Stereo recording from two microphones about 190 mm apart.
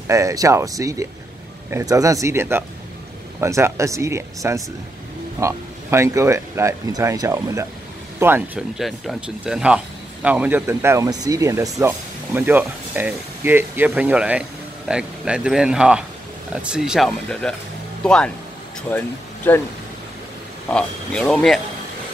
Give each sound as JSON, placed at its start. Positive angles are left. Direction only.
{"t": 0.1, "sound": "speech", "side_deg": -15}
{"t": 20.6, "sound": "speech", "side_deg": 5}